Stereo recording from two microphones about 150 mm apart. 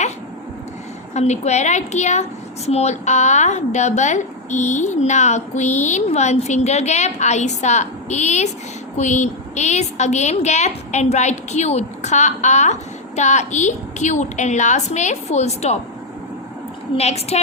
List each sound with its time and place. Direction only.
1.1 s a woman's voice: 50° left (ahead or behind)
17.0 s a woman's voice: 45° left (ahead or behind)